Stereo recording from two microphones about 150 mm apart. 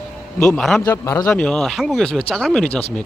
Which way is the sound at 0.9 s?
20° left (ahead or behind).